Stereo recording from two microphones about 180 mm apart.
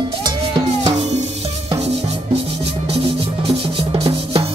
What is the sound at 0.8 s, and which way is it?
Music, 35° right (ahead or behind).